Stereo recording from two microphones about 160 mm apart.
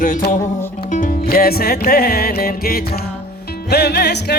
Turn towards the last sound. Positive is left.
turn(degrees=90)